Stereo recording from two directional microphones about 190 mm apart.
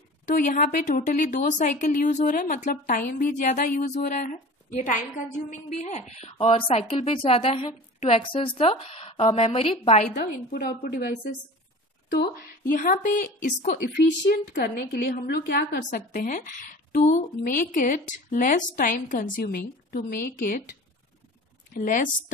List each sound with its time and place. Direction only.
0.4 s a woman's voice: 45° left (ahead or behind)
10.1 s speech: 50° left (ahead or behind)
21.7 s speech: 50° left (ahead or behind)